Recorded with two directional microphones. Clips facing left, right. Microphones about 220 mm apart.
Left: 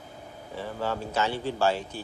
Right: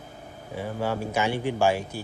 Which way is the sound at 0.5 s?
10° right (ahead or behind).